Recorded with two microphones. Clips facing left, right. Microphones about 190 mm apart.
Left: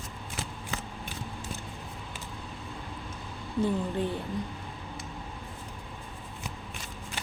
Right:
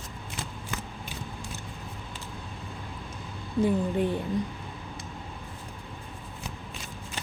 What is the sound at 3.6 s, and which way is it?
Speech, 15° right (ahead or behind).